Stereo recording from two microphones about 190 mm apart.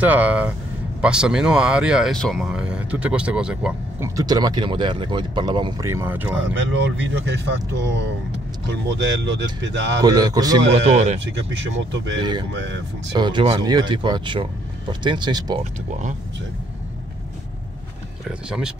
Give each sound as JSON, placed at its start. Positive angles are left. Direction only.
{"t": 0.0, "sound": "speech", "side_deg": -10}
{"t": 4.2, "sound": "speech", "side_deg": -20}
{"t": 7.0, "sound": "speech", "side_deg": -65}
{"t": 10.0, "sound": "speech", "side_deg": -20}
{"t": 10.7, "sound": "speech", "side_deg": -35}
{"t": 11.2, "sound": "speech", "side_deg": -70}
{"t": 12.2, "sound": "speech", "side_deg": -25}
{"t": 12.5, "sound": "speech", "side_deg": -75}
{"t": 13.1, "sound": "speech", "side_deg": -25}
{"t": 15.6, "sound": "speech", "side_deg": -40}